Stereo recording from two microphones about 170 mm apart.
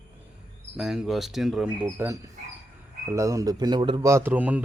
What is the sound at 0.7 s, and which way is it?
Speech, 5° right (ahead or behind).